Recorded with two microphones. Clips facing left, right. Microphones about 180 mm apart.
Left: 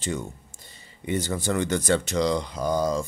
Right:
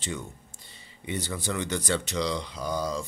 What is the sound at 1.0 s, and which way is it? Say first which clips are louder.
Speech: left 6 dB; 45° left (ahead or behind).